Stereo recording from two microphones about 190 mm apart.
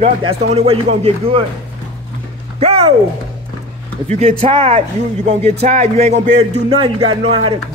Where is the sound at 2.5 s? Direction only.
30° right (ahead or behind).